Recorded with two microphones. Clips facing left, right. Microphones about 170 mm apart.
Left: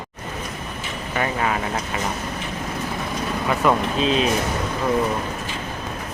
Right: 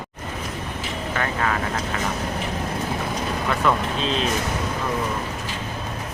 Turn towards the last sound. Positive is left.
turn(degrees=5)  # may be behind; listen again after turning